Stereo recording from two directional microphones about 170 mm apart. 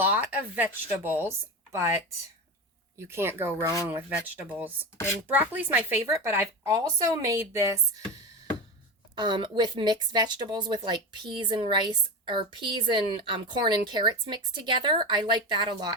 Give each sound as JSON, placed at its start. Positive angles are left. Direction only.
{"t": 0.0, "sound": "a woman's voice", "side_deg": -10}
{"t": 3.1, "sound": "a woman's voice", "side_deg": -15}
{"t": 9.1, "sound": "speech", "side_deg": -25}